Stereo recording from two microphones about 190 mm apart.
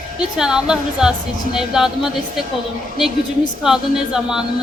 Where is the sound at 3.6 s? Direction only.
5° right (ahead or behind).